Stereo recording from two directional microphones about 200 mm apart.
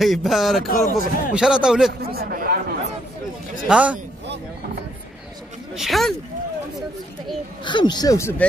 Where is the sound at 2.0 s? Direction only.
50° right (ahead or behind).